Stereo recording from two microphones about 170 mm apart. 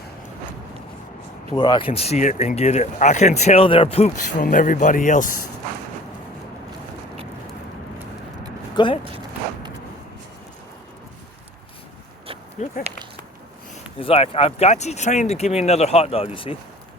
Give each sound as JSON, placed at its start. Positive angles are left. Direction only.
{"t": 1.5, "sound": "speech", "side_deg": 25}
{"t": 4.4, "sound": "speech", "side_deg": 50}
{"t": 8.7, "sound": "speech", "side_deg": 30}
{"t": 12.6, "sound": "speech", "side_deg": 40}
{"t": 14.0, "sound": "speech", "side_deg": 35}